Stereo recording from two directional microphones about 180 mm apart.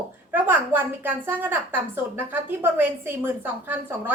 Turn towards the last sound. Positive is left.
turn(degrees=-10)  # may be behind; listen again after turning